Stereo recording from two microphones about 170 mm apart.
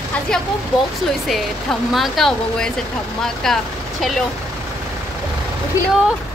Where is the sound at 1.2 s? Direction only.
Centre (ahead or behind).